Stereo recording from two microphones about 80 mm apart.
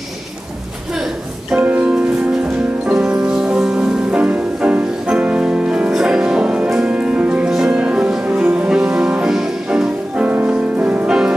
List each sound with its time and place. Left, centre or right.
1.6 s music: centre